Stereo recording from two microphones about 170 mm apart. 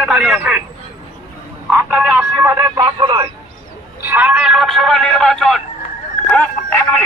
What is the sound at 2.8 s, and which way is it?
Radio, 30° right (ahead or behind).